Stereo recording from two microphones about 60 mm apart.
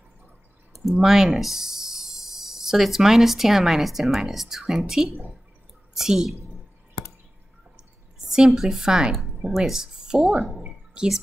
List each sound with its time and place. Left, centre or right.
0.7 s a woman's voice: centre
8.3 s a woman's voice: centre
10.6 s drip: centre